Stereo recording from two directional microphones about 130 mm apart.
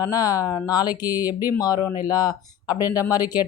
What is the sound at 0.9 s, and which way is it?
Speech, 15° right (ahead or behind).